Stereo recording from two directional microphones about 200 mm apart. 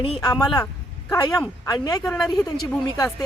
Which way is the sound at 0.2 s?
20° left (ahead or behind).